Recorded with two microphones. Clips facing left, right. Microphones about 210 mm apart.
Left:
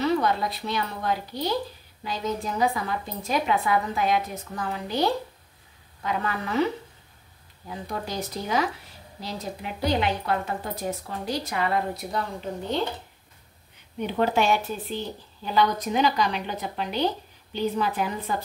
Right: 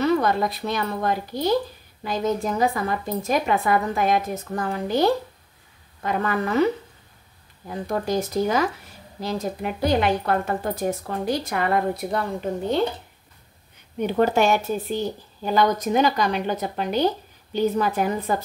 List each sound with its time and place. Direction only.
0.0 s a woman's voice: 50° right (ahead or behind)
13.9 s a woman's voice: 45° right (ahead or behind)